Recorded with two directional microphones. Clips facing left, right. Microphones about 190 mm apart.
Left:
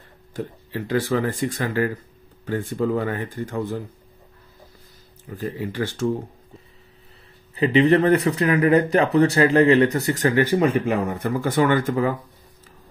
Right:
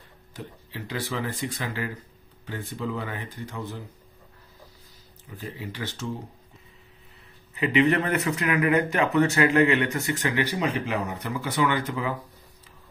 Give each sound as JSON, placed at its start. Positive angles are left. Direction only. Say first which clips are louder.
{"t": 0.3, "sound": "speech", "louder": "left 10 dB", "side_deg": 50}
{"t": 5.3, "sound": "speech", "louder": "left 8 dB", "side_deg": 50}
{"t": 7.5, "sound": "speech", "louder": "left 5 dB", "side_deg": 35}